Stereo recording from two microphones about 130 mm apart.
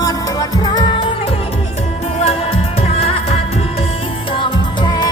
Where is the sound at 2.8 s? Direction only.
50° left (ahead or behind).